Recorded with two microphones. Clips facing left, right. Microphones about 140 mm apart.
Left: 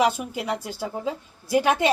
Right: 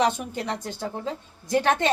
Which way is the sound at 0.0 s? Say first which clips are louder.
Left 1 dB; 5° left (ahead or behind).